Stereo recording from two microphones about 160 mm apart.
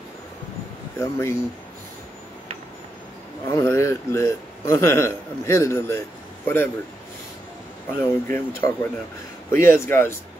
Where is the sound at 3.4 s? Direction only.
15° left (ahead or behind).